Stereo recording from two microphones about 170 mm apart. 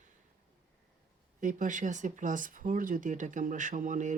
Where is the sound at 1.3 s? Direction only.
50° right (ahead or behind).